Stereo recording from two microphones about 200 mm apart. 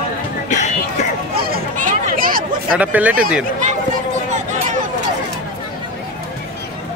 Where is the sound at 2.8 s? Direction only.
5° right (ahead or behind).